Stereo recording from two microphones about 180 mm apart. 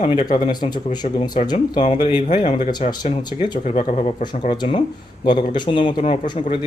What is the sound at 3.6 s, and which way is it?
Speech, 40° left (ahead or behind).